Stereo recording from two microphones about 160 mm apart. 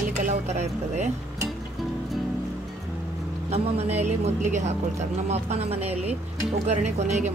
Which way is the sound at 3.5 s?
40° right (ahead or behind).